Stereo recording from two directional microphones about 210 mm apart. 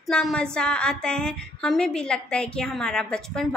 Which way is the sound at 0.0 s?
Centre (ahead or behind).